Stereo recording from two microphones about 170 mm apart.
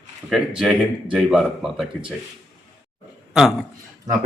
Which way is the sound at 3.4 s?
Centre (ahead or behind).